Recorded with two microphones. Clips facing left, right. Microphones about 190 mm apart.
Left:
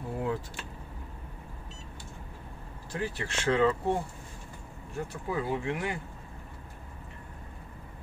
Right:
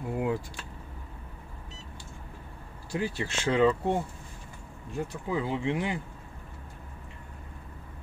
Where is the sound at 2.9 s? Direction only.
10° right (ahead or behind).